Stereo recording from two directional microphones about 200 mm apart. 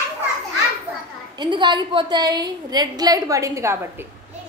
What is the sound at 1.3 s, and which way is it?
A woman's voice, 20° right (ahead or behind).